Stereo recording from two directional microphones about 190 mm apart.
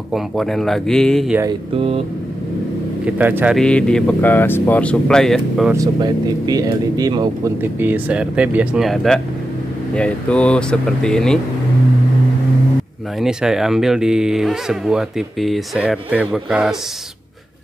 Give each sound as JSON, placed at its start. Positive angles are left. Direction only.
{"t": 0.1, "sound": "speech", "side_deg": 0}
{"t": 3.1, "sound": "a man's voice", "side_deg": -10}
{"t": 3.5, "sound": "speech", "side_deg": 5}
{"t": 5.7, "sound": "speech", "side_deg": -20}
{"t": 7.8, "sound": "speech", "side_deg": -10}
{"t": 13.2, "sound": "speech", "side_deg": -5}